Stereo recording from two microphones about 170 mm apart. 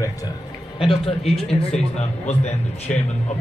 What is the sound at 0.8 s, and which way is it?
Speech, 30° left (ahead or behind).